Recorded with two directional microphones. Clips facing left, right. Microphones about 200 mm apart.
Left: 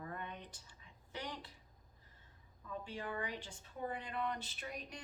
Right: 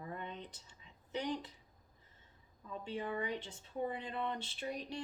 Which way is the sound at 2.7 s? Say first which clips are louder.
Right 3 dB; 20° right (ahead or behind).